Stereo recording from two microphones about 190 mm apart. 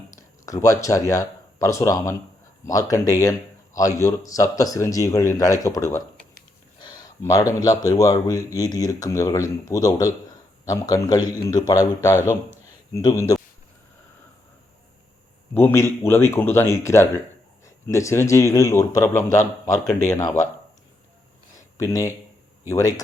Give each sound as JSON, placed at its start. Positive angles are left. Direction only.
{"t": 0.2, "sound": "a man's voice", "side_deg": 15}
{"t": 6.7, "sound": "a sound", "side_deg": 25}
{"t": 7.6, "sound": "a man's voice", "side_deg": 20}
{"t": 15.5, "sound": "a man's voice", "side_deg": 15}
{"t": 21.8, "sound": "a man's voice", "side_deg": 15}